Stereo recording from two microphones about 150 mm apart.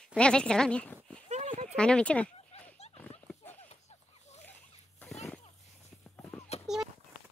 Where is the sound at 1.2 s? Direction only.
45° right (ahead or behind).